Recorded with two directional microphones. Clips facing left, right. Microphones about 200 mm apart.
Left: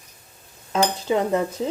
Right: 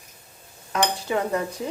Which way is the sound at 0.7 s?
25° left (ahead or behind).